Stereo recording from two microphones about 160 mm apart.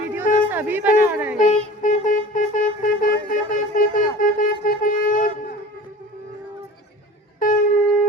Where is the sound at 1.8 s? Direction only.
55° left (ahead or behind).